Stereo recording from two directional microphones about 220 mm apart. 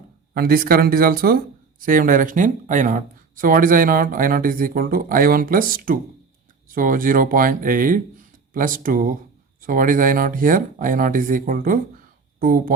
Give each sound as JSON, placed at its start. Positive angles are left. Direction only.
{"t": 0.3, "sound": "speech", "side_deg": -45}